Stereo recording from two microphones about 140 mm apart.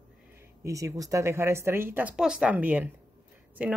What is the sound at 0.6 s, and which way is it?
A woman's voice, 25° right (ahead or behind).